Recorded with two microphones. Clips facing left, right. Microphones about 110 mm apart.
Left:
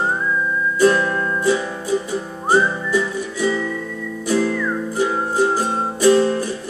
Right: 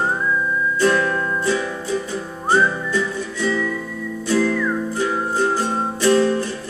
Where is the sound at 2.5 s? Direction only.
15° left (ahead or behind).